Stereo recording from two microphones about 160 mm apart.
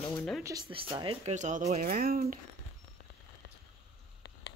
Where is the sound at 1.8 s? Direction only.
65° right (ahead or behind).